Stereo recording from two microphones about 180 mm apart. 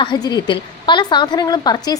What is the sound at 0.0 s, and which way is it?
A woman's voice, 25° left (ahead or behind).